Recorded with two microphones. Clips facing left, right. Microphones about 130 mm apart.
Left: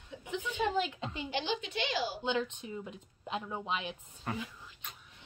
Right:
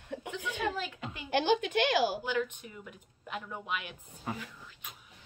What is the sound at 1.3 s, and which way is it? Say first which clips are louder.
Speech: right 10 dB; 55° right (ahead or behind).